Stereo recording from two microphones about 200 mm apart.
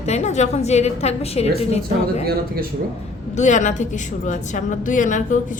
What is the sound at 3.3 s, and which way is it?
A woman's voice, 35° left (ahead or behind).